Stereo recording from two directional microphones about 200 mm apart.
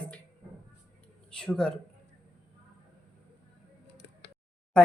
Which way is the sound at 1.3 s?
5° left (ahead or behind).